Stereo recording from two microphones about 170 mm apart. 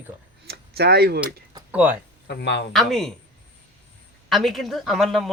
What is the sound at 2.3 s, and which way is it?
Speech, 85° left.